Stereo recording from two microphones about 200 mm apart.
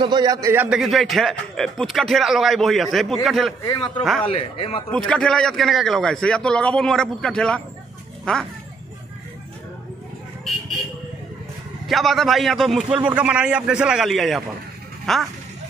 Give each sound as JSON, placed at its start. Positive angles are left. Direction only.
{"t": 0.0, "sound": "a man's voice", "side_deg": -20}
{"t": 3.6, "sound": "speech", "side_deg": 20}
{"t": 4.9, "sound": "a man's voice", "side_deg": 5}
{"t": 11.9, "sound": "a man's voice", "side_deg": 0}